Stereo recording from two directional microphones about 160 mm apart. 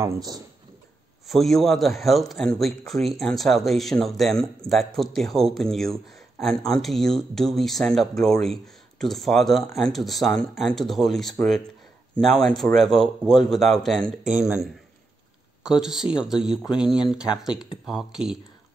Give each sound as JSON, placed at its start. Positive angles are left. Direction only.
{"t": 0.0, "sound": "speech", "side_deg": -20}
{"t": 1.2, "sound": "a man's voice", "side_deg": 0}
{"t": 14.2, "sound": "a man's voice", "side_deg": -5}